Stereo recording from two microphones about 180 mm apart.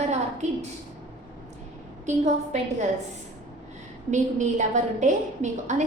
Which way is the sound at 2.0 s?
40° right (ahead or behind).